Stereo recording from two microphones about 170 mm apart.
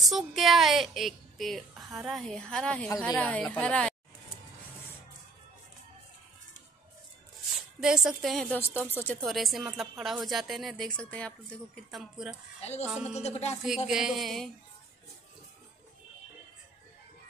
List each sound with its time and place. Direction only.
0.0 s a woman's voice: centre (ahead or behind)
7.8 s a woman's voice: 5° right (ahead or behind)
8.5 s a woman's voice: 10° left (ahead or behind)
9.2 s a woman's voice: centre (ahead or behind)
13.1 s speech: 40° left (ahead or behind)
13.8 s a woman's voice: 5° right (ahead or behind)